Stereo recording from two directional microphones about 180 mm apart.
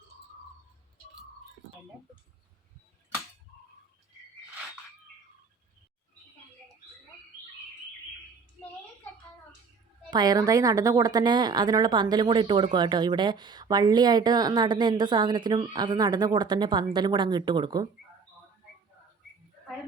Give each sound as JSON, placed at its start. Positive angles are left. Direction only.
{"t": 10.1, "sound": "a woman's voice", "side_deg": -25}